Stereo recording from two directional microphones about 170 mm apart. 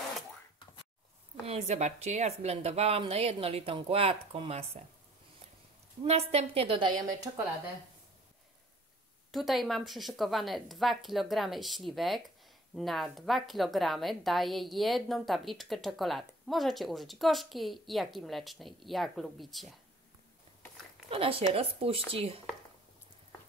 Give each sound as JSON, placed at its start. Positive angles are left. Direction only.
{"t": 1.4, "sound": "speech", "side_deg": -35}
{"t": 6.0, "sound": "speech", "side_deg": -35}
{"t": 9.3, "sound": "a woman's voice", "side_deg": 0}
{"t": 21.1, "sound": "speech", "side_deg": -35}